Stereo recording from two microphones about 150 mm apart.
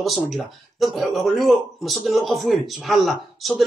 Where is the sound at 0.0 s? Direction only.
Centre (ahead or behind).